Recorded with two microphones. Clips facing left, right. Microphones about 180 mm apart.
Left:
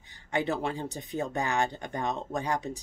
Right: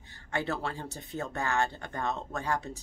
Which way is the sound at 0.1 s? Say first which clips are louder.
Left 4 dB; 15° left (ahead or behind).